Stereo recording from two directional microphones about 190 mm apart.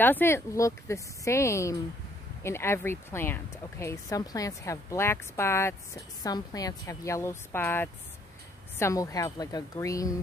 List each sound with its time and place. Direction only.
0.0 s speech: 10° left (ahead or behind)